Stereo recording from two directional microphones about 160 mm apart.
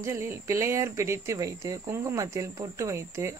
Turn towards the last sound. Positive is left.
turn(degrees=-20)  # may be behind; listen again after turning